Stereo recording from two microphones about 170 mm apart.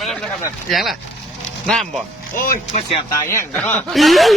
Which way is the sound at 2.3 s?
55° left (ahead or behind).